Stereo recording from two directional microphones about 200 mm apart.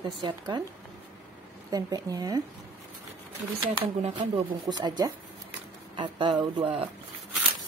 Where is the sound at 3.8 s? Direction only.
30° right (ahead or behind).